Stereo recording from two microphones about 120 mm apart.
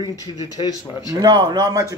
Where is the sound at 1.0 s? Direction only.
30° right (ahead or behind).